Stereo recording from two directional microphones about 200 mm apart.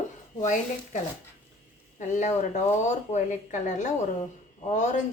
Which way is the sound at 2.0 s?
35° left (ahead or behind).